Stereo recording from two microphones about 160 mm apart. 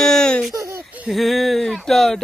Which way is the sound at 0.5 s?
20° right (ahead or behind).